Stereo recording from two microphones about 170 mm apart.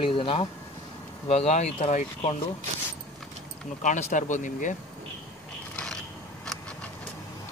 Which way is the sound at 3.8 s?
45° left (ahead or behind).